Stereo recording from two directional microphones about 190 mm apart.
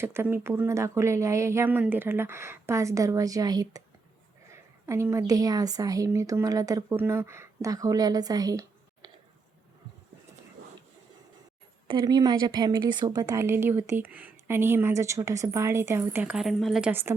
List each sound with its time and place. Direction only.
0.0 s a woman's voice: 10° right (ahead or behind)
11.9 s a woman's voice: 25° right (ahead or behind)